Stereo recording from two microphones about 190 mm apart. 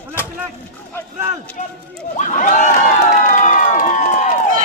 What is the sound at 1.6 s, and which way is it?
Speech, 40° left (ahead or behind).